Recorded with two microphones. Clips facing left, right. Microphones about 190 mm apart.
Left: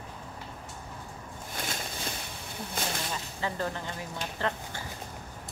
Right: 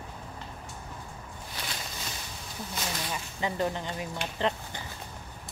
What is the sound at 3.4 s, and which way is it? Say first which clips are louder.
Speech: right 4 dB; 20° right (ahead or behind).